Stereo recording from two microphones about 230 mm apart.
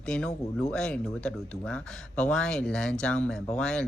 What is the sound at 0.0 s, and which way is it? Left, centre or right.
Speech, centre.